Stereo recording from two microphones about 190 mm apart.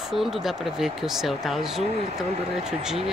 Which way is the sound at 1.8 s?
35° right (ahead or behind).